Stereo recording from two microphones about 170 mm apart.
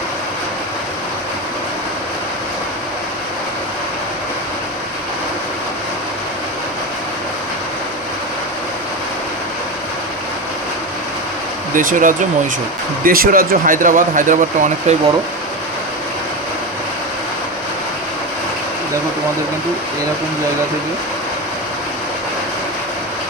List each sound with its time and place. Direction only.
11.7 s speech: 50° right (ahead or behind)